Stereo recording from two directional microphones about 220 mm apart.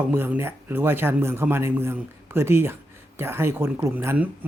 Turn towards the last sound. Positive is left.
turn(degrees=-10)  # may be behind; listen again after turning